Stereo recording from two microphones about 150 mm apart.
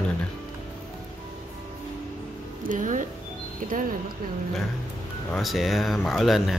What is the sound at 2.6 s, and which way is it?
Speech, 60° right (ahead or behind).